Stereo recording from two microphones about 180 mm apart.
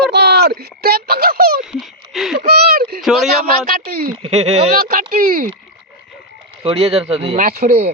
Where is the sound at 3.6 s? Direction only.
55° right (ahead or behind).